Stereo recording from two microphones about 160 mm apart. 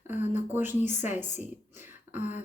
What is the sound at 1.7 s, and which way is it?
Beatboxing, 15° right (ahead or behind).